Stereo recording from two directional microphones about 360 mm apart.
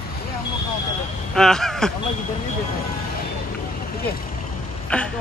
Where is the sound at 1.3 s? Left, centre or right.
Centre.